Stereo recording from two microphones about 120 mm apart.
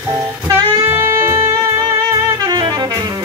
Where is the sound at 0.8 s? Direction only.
20° right (ahead or behind).